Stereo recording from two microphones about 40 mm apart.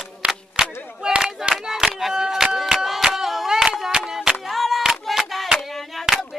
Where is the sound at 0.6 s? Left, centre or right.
Centre.